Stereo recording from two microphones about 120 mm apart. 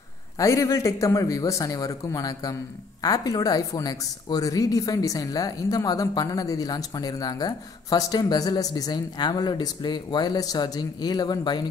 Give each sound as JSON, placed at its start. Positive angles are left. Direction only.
{"t": 0.4, "sound": "speech", "side_deg": 25}